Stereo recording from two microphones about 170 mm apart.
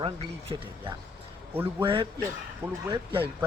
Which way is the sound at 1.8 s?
30° right (ahead or behind).